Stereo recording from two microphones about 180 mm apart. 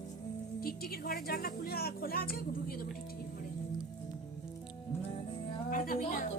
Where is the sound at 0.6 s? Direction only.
55° left (ahead or behind).